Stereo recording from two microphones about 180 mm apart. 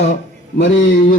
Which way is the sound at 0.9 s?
50° left (ahead or behind).